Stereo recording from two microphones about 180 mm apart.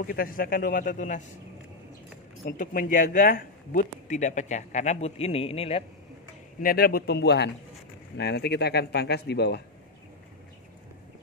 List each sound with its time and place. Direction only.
0.0 s speech: 50° left (ahead or behind)
2.4 s speech: 50° left (ahead or behind); by 5.9 s 35° left (ahead or behind)
6.6 s speech: 55° left (ahead or behind)